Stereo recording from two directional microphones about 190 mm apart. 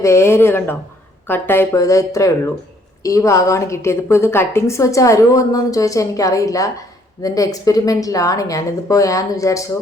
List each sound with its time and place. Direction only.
0.0 s a woman's voice: 15° left (ahead or behind)